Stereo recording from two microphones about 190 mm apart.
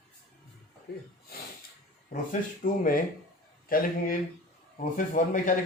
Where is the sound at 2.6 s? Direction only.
45° left (ahead or behind).